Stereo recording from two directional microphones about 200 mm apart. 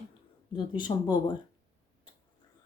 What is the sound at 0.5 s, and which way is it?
Speech, 20° left (ahead or behind).